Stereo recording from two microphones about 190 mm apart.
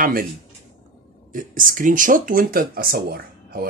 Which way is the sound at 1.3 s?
45° right (ahead or behind).